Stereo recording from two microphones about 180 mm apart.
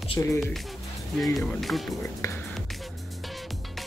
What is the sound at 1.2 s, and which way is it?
Speech, centre (ahead or behind).